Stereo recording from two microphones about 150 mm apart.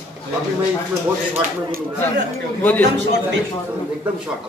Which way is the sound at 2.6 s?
10° left (ahead or behind).